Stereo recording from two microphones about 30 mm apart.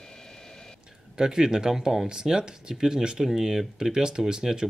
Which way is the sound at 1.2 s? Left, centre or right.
Right.